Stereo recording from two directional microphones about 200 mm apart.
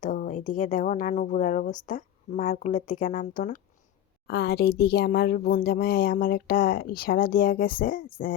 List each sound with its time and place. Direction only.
0.0 s a sound: 40° left (ahead or behind)
0.4 s speech: 40° left (ahead or behind)
4.3 s speech: 55° left (ahead or behind)